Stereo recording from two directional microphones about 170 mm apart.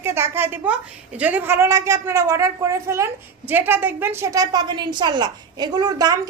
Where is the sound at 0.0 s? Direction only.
15° right (ahead or behind).